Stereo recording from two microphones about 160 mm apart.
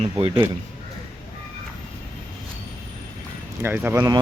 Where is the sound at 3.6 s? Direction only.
15° right (ahead or behind).